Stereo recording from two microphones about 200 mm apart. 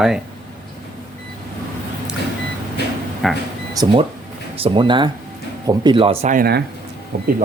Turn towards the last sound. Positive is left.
turn(degrees=-50)  # may be behind; listen again after turning